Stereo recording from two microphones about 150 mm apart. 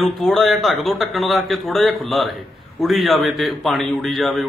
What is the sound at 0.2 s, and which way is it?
A man's voice, centre (ahead or behind).